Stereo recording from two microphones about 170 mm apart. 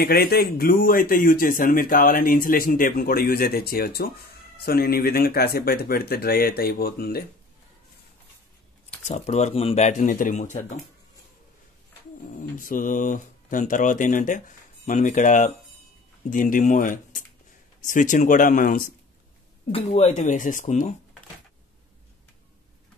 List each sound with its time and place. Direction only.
0.0 s speech: 65° left (ahead or behind)
9.0 s speech: 40° left (ahead or behind)
12.3 s speech: 50° left (ahead or behind)
19.7 s speech: 40° left (ahead or behind)